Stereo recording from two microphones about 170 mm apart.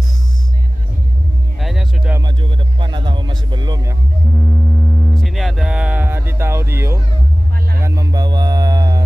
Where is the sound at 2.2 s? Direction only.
30° right (ahead or behind).